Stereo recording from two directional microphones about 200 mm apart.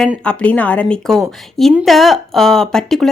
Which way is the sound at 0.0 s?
5° left (ahead or behind).